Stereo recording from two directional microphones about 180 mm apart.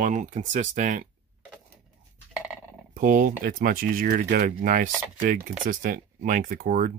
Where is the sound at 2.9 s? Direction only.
50° right (ahead or behind).